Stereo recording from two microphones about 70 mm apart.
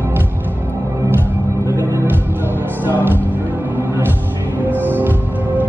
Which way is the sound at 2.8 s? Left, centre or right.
Right.